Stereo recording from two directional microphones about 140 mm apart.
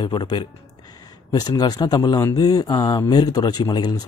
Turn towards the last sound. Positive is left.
turn(degrees=30)  # may be behind; listen again after turning